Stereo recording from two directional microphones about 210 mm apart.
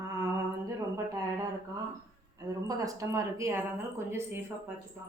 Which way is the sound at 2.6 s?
15° right (ahead or behind).